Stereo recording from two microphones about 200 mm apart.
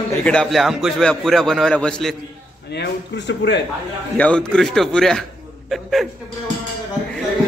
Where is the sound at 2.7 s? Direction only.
60° left (ahead or behind).